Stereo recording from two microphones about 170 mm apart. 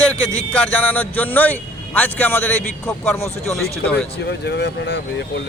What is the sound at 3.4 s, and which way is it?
Speech, centre (ahead or behind).